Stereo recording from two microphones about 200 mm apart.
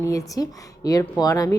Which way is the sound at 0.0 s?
15° left (ahead or behind).